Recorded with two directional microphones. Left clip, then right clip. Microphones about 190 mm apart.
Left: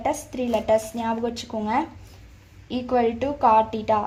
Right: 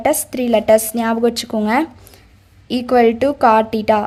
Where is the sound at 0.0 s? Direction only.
40° right (ahead or behind).